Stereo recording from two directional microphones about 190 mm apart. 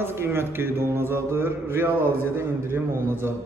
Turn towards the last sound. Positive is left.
turn(degrees=-15)  # may be behind; listen again after turning